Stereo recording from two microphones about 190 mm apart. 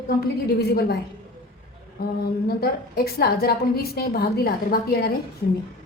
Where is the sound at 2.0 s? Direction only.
55° left (ahead or behind).